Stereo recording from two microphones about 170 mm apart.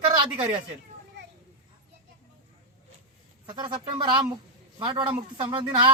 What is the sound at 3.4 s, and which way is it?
A man's voice, 25° right (ahead or behind).